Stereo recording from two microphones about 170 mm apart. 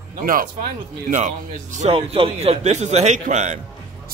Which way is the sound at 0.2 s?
55° right (ahead or behind).